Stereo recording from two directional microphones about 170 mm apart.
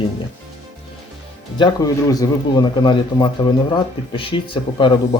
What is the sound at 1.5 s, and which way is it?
Speech, 25° left (ahead or behind).